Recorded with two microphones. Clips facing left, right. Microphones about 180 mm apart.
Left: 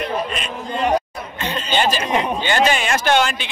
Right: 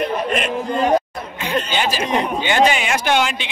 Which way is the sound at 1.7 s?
10° right (ahead or behind).